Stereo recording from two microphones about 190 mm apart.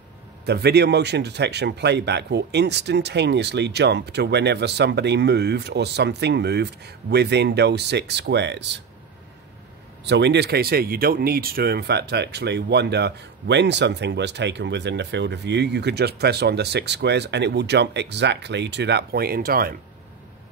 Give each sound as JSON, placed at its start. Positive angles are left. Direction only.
{"t": 0.5, "sound": "speech", "side_deg": -60}
{"t": 10.0, "sound": "speech", "side_deg": -65}